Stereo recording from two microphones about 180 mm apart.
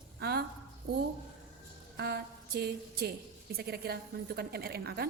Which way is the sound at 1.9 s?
70° right (ahead or behind).